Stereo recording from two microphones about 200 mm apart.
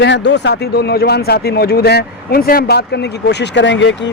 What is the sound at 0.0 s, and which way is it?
Speech, 60° left (ahead or behind).